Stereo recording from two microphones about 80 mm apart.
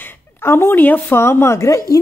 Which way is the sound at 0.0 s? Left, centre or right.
Left.